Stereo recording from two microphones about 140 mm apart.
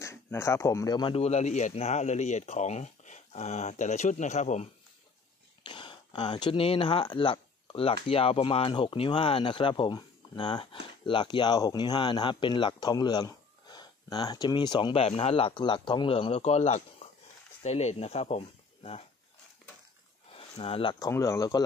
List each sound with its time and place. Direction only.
0.0 s speech: 20° left (ahead or behind)
1.1 s speech: 50° left (ahead or behind)
5.7 s speech: 35° left (ahead or behind)
20.3 s speech: 45° left (ahead or behind)
21.1 s speech: 20° left (ahead or behind)